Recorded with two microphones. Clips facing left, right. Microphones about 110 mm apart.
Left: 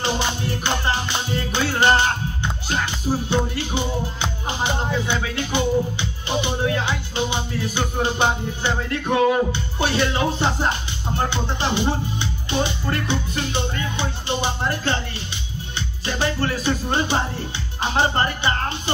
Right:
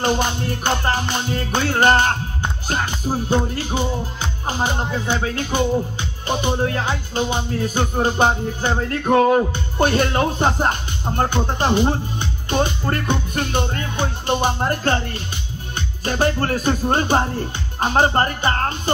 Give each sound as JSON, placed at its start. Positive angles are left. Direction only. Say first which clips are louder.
{"t": 0.8, "sound": "music", "louder": "right 2 dB", "side_deg": -50}
{"t": 5.0, "sound": "music", "louder": "right 2 dB", "side_deg": -40}
{"t": 16.1, "sound": "music", "louder": "right 4 dB", "side_deg": -50}